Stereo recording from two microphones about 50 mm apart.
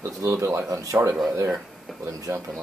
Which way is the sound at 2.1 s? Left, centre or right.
Right.